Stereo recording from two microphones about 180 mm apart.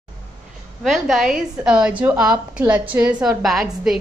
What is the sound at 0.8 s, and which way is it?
A woman's voice, centre (ahead or behind).